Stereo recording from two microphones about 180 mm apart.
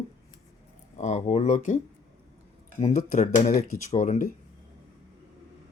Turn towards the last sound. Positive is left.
turn(degrees=45)  # may be behind; listen again after turning